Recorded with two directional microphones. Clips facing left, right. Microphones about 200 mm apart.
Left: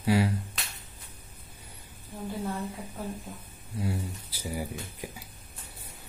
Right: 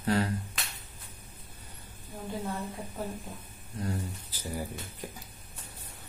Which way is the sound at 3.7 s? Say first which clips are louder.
Left 2 dB; 10° left (ahead or behind).